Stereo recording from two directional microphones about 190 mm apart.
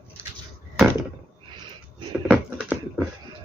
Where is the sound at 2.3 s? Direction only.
5° right (ahead or behind).